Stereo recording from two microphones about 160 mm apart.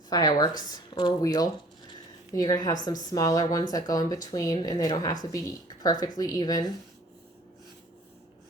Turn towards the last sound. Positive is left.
turn(degrees=25)  # may be behind; listen again after turning